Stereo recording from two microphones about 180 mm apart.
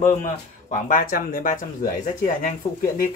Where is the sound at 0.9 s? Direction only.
50° left (ahead or behind).